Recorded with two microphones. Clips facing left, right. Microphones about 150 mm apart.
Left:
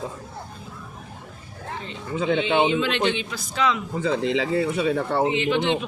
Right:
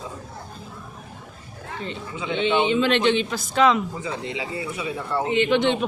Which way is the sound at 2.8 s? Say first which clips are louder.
Right 4 dB; 40° right (ahead or behind).